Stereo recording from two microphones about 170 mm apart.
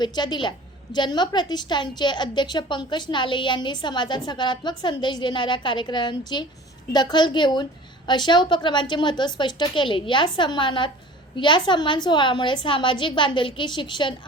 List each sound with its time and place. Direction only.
0.0 s a woman's voice: 25° left (ahead or behind)